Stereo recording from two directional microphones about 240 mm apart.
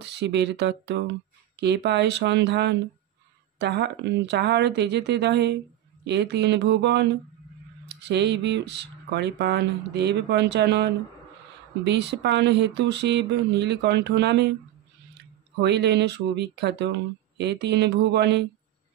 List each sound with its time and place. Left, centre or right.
0.0 s speech: right
15.6 s speech: right